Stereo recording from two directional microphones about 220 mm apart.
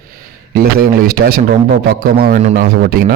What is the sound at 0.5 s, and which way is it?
A man's voice, 45° right (ahead or behind).